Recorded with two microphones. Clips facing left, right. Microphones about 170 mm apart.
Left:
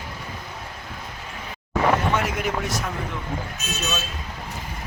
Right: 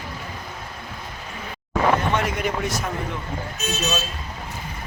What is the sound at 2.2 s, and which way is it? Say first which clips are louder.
Speech: right 1 dB; centre (ahead or behind).